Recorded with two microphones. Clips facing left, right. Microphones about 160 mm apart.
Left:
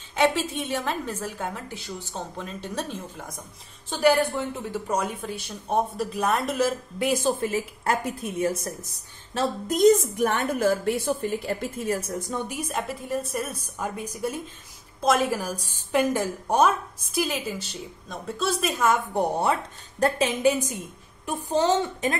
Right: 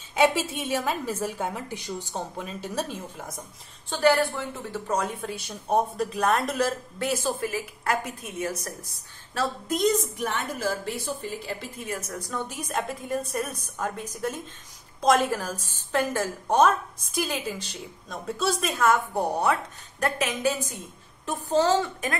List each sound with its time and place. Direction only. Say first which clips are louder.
0.1 s a woman's voice: even; 10° right (ahead or behind)
3.9 s a woman's voice: left 1 dB; 15° left (ahead or behind)
7.0 s a woman's voice: left 4 dB; 20° left (ahead or behind)
9.7 s a woman's voice: left 7 dB; 45° left (ahead or behind)
12.0 s a woman's voice: left 4 dB; 25° left (ahead or behind)
12.4 s a woman's voice: left 1 dB; 10° left (ahead or behind)
19.1 s a woman's voice: left 1 dB; 20° left (ahead or behind)
21.3 s a woman's voice: even; 15° left (ahead or behind)